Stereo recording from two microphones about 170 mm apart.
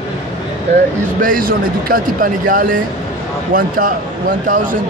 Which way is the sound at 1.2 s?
55° right (ahead or behind).